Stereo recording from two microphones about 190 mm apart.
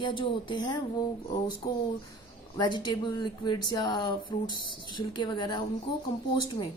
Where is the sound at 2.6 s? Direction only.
25° left (ahead or behind).